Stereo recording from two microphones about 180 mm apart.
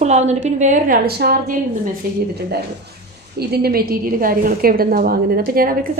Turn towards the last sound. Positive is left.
turn(degrees=-55)  # may be behind; listen again after turning